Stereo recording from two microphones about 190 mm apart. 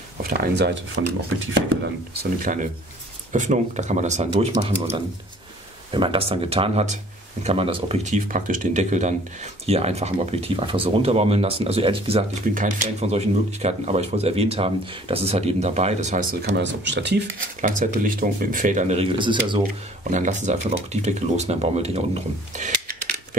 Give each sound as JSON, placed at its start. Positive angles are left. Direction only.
{"t": 0.2, "sound": "speech", "side_deg": -55}
{"t": 2.5, "sound": "speech", "side_deg": -45}
{"t": 5.9, "sound": "speech", "side_deg": -25}
{"t": 12.4, "sound": "speech", "side_deg": -45}
{"t": 16.4, "sound": "speech", "side_deg": -65}
{"t": 17.6, "sound": "speech", "side_deg": -40}
{"t": 20.0, "sound": "speech", "side_deg": -40}